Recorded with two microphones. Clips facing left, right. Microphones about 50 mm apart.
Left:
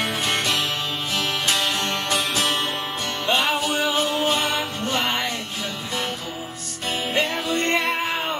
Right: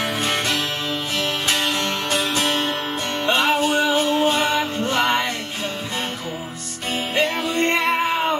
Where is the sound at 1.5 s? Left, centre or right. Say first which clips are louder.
Right 1 dB; right.